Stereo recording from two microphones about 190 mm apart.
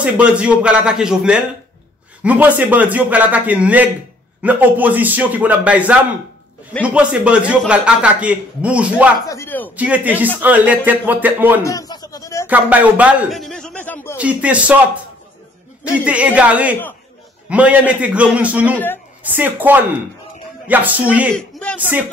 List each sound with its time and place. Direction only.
0.0 s a man's voice: 5° right (ahead or behind)
9.2 s a sound: 15° left (ahead or behind)
9.8 s a man's voice: 10° right (ahead or behind)
11.6 s a sound: 20° left (ahead or behind)
12.4 s a man's voice: 10° right (ahead or behind); by 14.1 s 10° left (ahead or behind)
14.1 s a man's voice: 5° right (ahead or behind)
15.8 s a man's voice: 5° right (ahead or behind)